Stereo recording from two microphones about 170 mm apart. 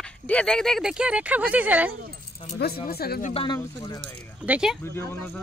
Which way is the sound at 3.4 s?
20° left (ahead or behind).